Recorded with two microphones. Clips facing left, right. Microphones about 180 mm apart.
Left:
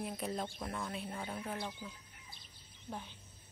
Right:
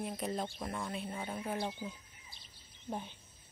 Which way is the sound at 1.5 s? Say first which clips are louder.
Right 5 dB; 20° right (ahead or behind).